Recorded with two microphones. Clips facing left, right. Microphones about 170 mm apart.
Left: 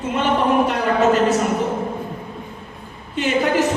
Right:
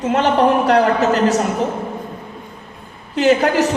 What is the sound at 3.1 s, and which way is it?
Speech, 75° right (ahead or behind).